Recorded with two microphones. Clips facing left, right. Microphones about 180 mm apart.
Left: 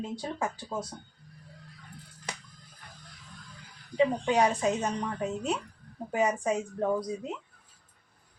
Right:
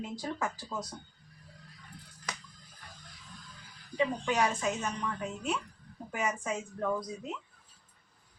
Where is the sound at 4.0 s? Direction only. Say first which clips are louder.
Left 5 dB; 25° left (ahead or behind).